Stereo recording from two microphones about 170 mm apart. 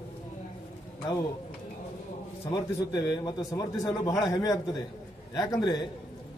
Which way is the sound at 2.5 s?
25° left (ahead or behind).